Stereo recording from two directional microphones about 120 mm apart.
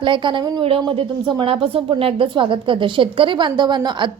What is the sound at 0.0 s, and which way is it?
A woman's voice, 45° right (ahead or behind).